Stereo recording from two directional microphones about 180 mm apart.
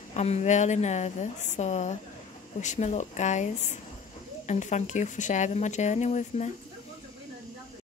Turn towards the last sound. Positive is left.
turn(degrees=40)  # may be behind; listen again after turning